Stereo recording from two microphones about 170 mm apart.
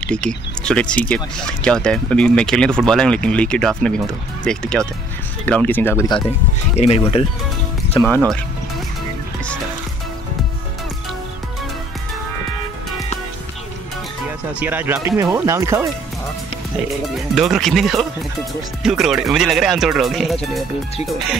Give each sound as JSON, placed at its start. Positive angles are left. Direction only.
{"t": 0.0, "sound": "speech", "side_deg": 5}
{"t": 6.7, "sound": "speech", "side_deg": 35}
{"t": 14.6, "sound": "speech", "side_deg": -10}
{"t": 17.4, "sound": "speech", "side_deg": 0}